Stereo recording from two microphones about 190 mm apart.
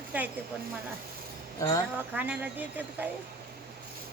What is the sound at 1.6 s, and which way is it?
Speech, 15° left (ahead or behind).